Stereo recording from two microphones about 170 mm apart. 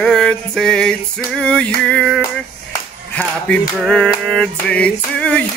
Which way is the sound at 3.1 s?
5° left (ahead or behind).